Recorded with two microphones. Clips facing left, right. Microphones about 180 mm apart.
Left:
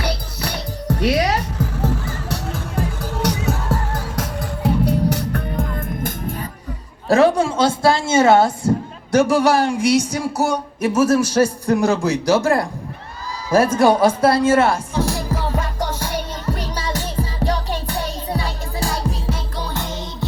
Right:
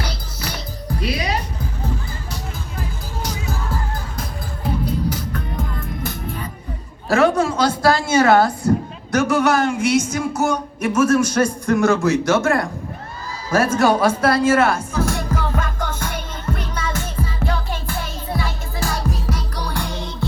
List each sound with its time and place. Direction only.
0.0 s music: 65° left (ahead or behind)
5.7 s music: 50° left (ahead or behind)
7.1 s a woman's voice: 30° left (ahead or behind)
13.5 s music: 30° left (ahead or behind)